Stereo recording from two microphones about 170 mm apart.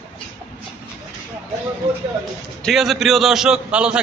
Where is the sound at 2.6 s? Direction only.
Centre (ahead or behind).